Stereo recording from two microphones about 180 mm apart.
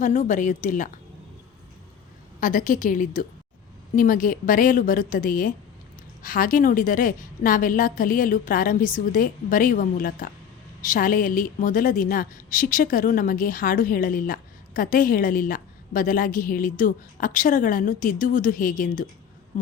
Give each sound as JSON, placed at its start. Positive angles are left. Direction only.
{"t": 0.0, "sound": "a woman's voice", "side_deg": 45}
{"t": 2.4, "sound": "a woman's voice", "side_deg": 45}